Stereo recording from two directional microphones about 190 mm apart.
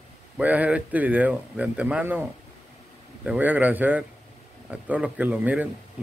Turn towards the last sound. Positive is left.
turn(degrees=-10)  # may be behind; listen again after turning